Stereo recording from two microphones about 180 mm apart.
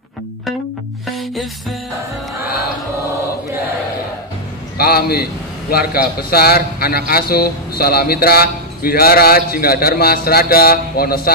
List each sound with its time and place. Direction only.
1.1 s music: centre (ahead or behind)
4.7 s a man's voice: 60° left (ahead or behind)